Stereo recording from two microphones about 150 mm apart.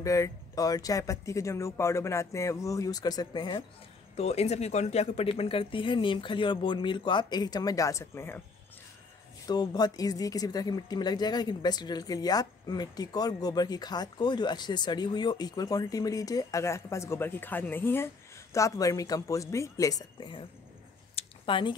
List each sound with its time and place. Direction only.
0.0 s speech: 20° left (ahead or behind)
4.2 s speech: 45° left (ahead or behind); by 8.4 s 15° left (ahead or behind)
9.5 s speech: 25° left (ahead or behind)
21.1 s a sound: 40° left (ahead or behind)